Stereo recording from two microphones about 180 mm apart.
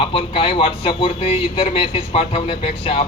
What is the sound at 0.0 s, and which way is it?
A man's voice, 30° left (ahead or behind).